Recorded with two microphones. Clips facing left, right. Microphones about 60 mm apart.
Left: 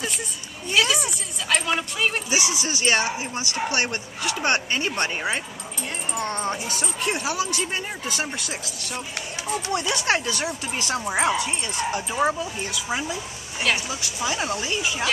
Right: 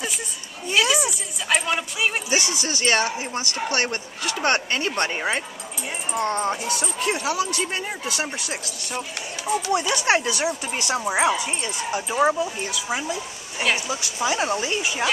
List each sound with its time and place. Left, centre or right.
0.7 s speech: centre
2.2 s speech: centre
5.1 s speech: right
6.1 s speech: centre
9.5 s a woman's voice: centre
13.8 s speech: right